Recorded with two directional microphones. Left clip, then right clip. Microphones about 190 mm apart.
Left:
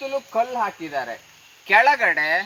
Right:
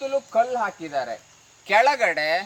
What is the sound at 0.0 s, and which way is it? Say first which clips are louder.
A woman's voice: right 1 dB; 30° right (ahead or behind).